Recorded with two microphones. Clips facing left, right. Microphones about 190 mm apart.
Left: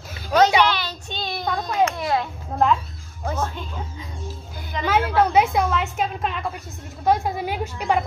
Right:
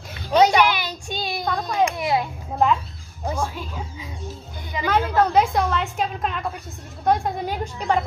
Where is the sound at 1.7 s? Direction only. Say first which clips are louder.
Even; 15° right (ahead or behind).